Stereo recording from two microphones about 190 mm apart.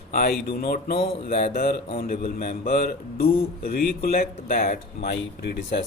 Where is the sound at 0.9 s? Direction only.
30° left (ahead or behind).